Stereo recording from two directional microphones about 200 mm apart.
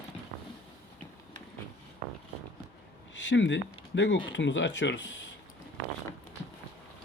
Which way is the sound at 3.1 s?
65° left (ahead or behind).